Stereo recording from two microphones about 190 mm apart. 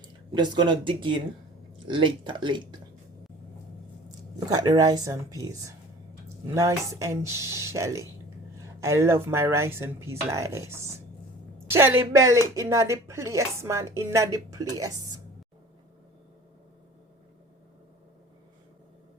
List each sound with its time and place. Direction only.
0.3 s a woman's voice: 25° right (ahead or behind)
4.4 s a woman's voice: 20° right (ahead or behind)